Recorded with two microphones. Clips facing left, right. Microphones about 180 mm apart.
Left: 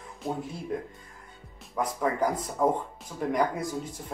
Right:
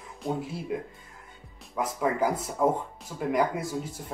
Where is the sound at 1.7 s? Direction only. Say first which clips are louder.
Even; 5° right (ahead or behind).